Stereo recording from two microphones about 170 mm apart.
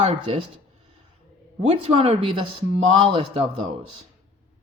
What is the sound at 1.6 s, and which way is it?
Speech, 35° right (ahead or behind).